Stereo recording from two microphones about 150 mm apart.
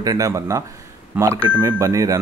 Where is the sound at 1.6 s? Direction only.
20° right (ahead or behind).